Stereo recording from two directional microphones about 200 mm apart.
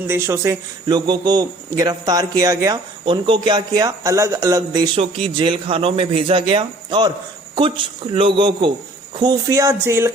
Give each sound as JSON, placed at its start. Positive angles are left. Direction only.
{"t": 0.1, "sound": "a man's voice", "side_deg": -15}
{"t": 8.1, "sound": "a man's voice", "side_deg": -25}